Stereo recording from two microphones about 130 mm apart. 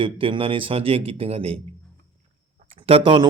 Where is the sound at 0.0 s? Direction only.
45° right (ahead or behind).